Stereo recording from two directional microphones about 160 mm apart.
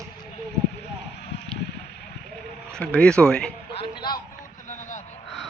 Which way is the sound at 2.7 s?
5° left (ahead or behind).